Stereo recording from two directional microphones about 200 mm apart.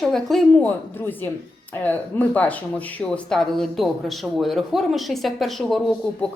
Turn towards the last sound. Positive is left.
turn(degrees=5)  # may be behind; listen again after turning